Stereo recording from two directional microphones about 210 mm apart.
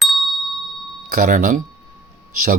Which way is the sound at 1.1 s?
40° right (ahead or behind).